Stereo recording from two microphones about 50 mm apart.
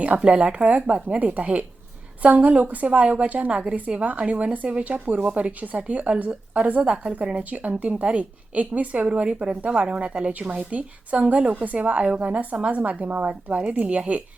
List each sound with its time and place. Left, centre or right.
0.3 s a woman's voice: right